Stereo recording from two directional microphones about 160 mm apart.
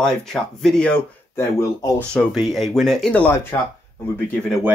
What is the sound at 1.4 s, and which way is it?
Speech, 15° left (ahead or behind).